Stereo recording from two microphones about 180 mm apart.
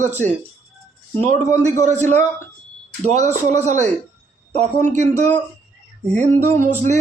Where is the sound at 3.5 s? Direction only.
40° right (ahead or behind).